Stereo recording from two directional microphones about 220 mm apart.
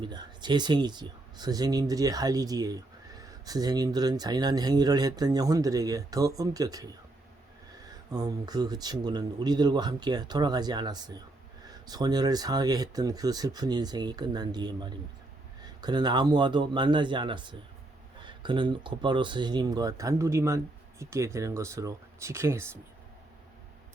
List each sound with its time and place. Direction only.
0.0 s speech: 20° right (ahead or behind)
8.1 s speech: 15° right (ahead or behind)